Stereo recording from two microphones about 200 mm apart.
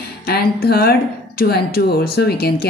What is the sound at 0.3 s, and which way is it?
A woman's voice, 50° left (ahead or behind).